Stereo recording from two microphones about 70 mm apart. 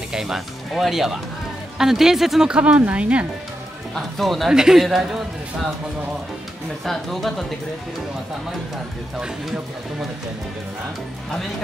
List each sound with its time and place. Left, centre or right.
0.1 s speech: centre
2.5 s speech: centre
3.9 s speech: centre
6.8 s speech: centre